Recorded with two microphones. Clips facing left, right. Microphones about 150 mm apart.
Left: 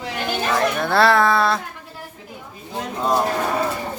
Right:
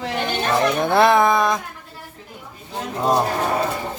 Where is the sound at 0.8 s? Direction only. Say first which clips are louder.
Right 1 dB; 20° right (ahead or behind).